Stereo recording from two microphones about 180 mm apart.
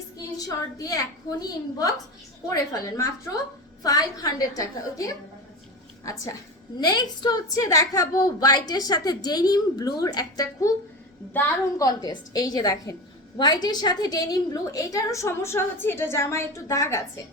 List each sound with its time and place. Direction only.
0.3 s a woman's voice: 20° left (ahead or behind)
3.8 s a woman's voice: 20° left (ahead or behind)